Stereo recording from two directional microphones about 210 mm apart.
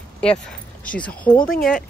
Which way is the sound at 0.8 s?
5° left (ahead or behind).